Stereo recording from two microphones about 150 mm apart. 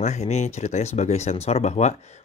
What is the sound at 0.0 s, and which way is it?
Speech, 50° left (ahead or behind).